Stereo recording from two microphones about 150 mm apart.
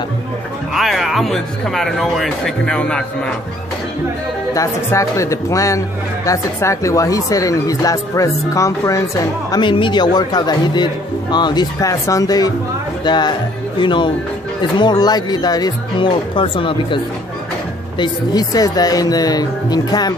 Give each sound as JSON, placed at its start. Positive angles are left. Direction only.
{"t": 0.7, "sound": "speech", "side_deg": 0}
{"t": 4.6, "sound": "speech", "side_deg": 20}